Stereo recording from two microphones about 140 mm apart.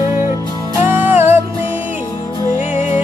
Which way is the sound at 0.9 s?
15° right (ahead or behind).